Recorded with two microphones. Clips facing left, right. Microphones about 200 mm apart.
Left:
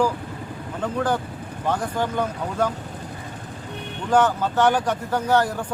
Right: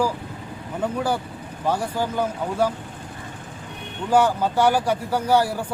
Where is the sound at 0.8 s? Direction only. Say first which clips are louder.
Even; 10° right (ahead or behind).